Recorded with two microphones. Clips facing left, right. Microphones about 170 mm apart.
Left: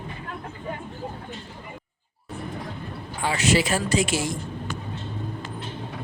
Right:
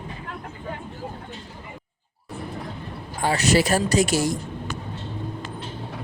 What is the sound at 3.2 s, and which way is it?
Speech, 40° right (ahead or behind).